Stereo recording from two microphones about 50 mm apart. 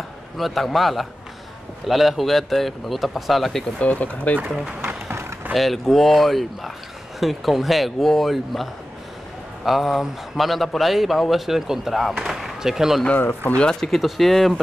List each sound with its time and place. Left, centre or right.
0.4 s speech: centre
3.8 s speech: left
4.8 s a sound: right
5.5 s speech: centre
9.7 s speech: centre
12.3 s a sound: centre
13.1 s speech: left
13.7 s speech: centre